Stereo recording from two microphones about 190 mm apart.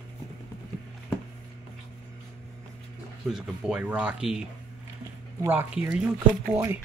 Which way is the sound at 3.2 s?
Centre (ahead or behind).